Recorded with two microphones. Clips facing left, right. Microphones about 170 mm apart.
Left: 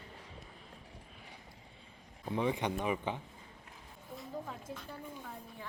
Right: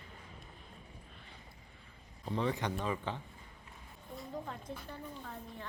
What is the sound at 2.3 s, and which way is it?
Speech, 15° left (ahead or behind).